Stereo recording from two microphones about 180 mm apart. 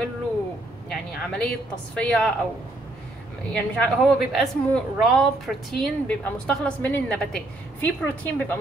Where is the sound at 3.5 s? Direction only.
5° left (ahead or behind).